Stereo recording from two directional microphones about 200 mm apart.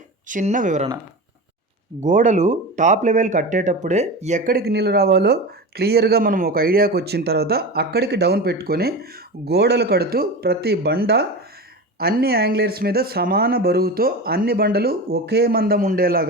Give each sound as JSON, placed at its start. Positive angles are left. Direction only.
{"t": 0.3, "sound": "speech", "side_deg": -40}
{"t": 2.0, "sound": "speech", "side_deg": -40}